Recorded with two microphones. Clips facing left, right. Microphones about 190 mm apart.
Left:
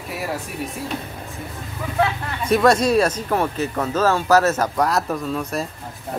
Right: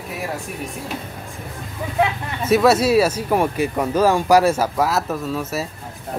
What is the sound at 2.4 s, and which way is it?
Speech, 5° right (ahead or behind).